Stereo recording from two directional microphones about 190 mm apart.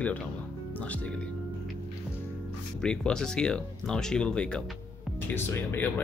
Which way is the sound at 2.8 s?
5° left (ahead or behind).